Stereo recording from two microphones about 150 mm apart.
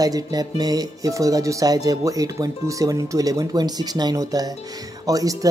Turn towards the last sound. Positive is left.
turn(degrees=-25)  # may be behind; listen again after turning